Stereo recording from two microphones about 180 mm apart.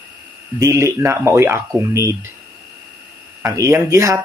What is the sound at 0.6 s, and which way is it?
Speech, 15° right (ahead or behind).